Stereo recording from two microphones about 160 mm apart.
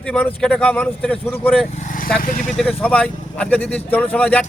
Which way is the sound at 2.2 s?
60° left (ahead or behind).